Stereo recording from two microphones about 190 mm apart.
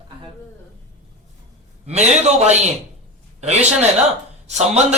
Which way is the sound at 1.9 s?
35° right (ahead or behind).